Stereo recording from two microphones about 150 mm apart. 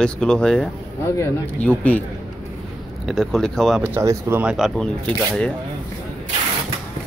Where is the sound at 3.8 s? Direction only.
20° right (ahead or behind); by 5.5 s 5° left (ahead or behind).